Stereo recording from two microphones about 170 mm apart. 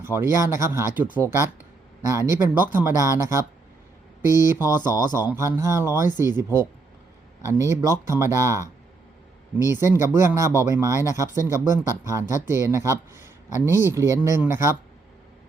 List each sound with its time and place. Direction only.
0.0 s speech: 15° right (ahead or behind)